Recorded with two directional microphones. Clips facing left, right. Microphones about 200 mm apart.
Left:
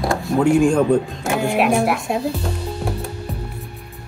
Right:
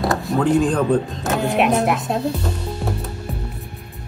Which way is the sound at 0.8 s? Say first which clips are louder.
Left 2 dB; 15° left (ahead or behind).